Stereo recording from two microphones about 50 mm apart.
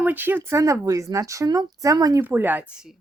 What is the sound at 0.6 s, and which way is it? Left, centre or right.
Speech, right.